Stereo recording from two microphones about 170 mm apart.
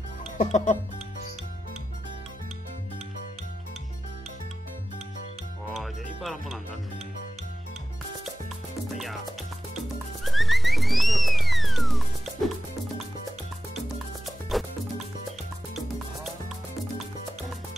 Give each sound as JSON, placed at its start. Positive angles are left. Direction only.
{"t": 0.4, "sound": "music", "side_deg": 45}
{"t": 6.2, "sound": "speech", "side_deg": 0}
{"t": 8.9, "sound": "music", "side_deg": 0}
{"t": 10.2, "sound": "music", "side_deg": 0}